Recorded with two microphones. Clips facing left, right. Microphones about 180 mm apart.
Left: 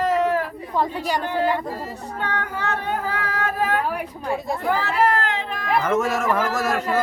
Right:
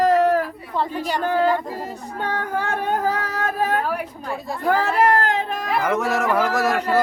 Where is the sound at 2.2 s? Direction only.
50° right (ahead or behind).